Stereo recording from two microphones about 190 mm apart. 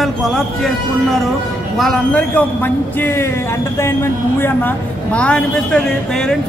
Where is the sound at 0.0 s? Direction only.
Centre (ahead or behind).